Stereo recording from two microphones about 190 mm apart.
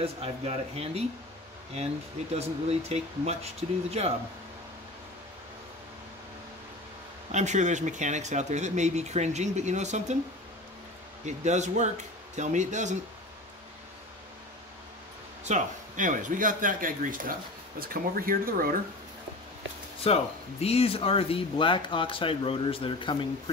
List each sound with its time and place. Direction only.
0.0 s speech: 30° right (ahead or behind)
2.3 s speech: 35° right (ahead or behind)
7.3 s speech: 40° right (ahead or behind)
11.2 s speech: 40° right (ahead or behind)
15.4 s speech: 40° right (ahead or behind)
20.1 s speech: 30° left (ahead or behind)